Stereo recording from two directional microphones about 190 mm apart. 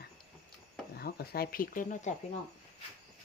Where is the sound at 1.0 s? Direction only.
55° left (ahead or behind).